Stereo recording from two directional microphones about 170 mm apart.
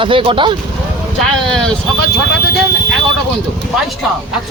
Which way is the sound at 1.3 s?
5° left (ahead or behind).